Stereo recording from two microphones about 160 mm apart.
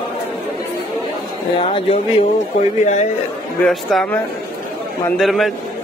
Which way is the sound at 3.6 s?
5° left (ahead or behind).